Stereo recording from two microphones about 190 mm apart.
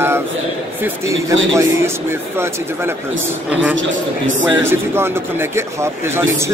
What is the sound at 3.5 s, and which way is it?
Speech, 5° right (ahead or behind).